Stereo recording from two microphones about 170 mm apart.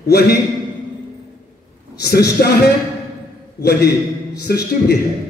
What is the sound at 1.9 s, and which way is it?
Speech, 70° left (ahead or behind).